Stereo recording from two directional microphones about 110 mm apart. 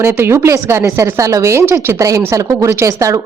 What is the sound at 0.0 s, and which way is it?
A woman's voice, 20° right (ahead or behind).